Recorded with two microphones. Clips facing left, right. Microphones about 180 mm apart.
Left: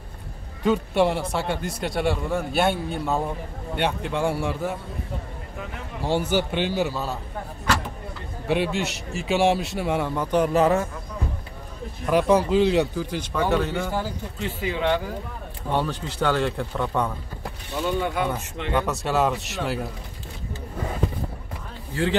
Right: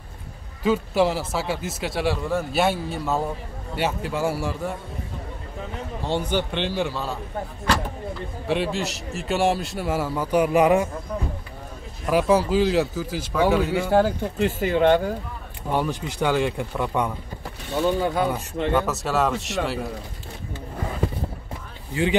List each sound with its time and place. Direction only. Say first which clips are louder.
0.7 s speech: even; centre (ahead or behind)
6.0 s speech: left 2 dB; 10° left (ahead or behind)
8.5 s speech: left 1 dB; centre (ahead or behind)
12.1 s speech: even; 5° right (ahead or behind)
13.9 s speech: right 9 dB; 65° right (ahead or behind)
15.7 s speech: right 1 dB; 10° right (ahead or behind)
17.8 s speech: right 3 dB; 35° right (ahead or behind)
18.7 s speech: even; centre (ahead or behind)